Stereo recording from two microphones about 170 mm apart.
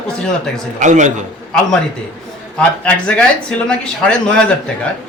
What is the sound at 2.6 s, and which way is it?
A man's voice, 10° left (ahead or behind).